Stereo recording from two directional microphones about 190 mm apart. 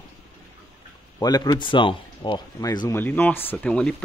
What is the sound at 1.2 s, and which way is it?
Speech, 20° left (ahead or behind).